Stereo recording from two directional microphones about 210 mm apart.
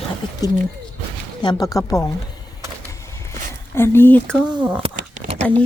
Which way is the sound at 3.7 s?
10° left (ahead or behind).